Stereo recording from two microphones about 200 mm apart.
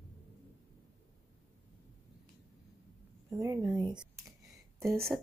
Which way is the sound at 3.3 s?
15° right (ahead or behind).